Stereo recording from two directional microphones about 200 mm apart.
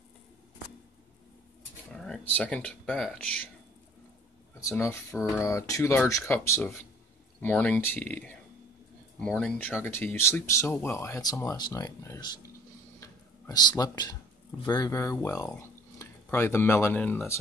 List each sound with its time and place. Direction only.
1.9 s speech: 5° left (ahead or behind)
4.6 s speech: 15° left (ahead or behind)
13.0 s a sound: 20° left (ahead or behind)
14.7 s speech: 20° left (ahead or behind)